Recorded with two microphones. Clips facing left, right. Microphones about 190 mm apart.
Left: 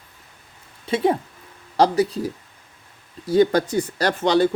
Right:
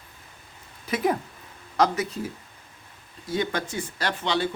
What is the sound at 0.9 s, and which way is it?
Speech, 30° left (ahead or behind).